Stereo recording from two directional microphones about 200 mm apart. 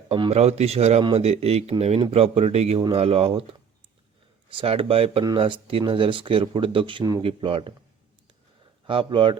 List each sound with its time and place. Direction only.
0.1 s speech: 30° right (ahead or behind)
4.4 s speech: 30° right (ahead or behind)
8.9 s speech: 25° right (ahead or behind)